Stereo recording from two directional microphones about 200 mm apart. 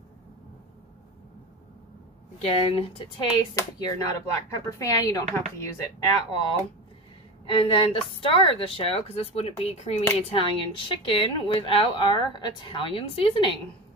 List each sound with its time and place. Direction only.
2.3 s speech: 30° left (ahead or behind)
7.4 s speech: 25° left (ahead or behind)